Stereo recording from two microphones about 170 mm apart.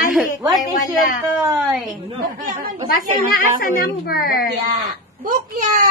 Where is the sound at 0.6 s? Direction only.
50° left (ahead or behind).